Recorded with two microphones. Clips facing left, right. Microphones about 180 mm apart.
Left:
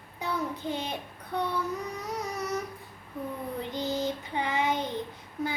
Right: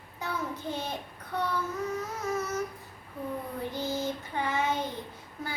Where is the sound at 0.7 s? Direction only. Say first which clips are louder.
Even; 15° left (ahead or behind).